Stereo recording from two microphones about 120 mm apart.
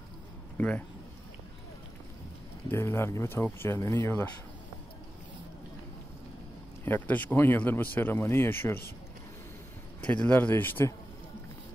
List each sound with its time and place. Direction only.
0.6 s speech: 15° left (ahead or behind)
2.7 s speech: 20° left (ahead or behind)
6.8 s speech: 15° left (ahead or behind)
10.1 s speech: 10° left (ahead or behind)